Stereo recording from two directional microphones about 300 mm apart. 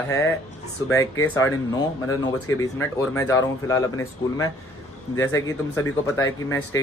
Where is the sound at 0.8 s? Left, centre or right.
Centre.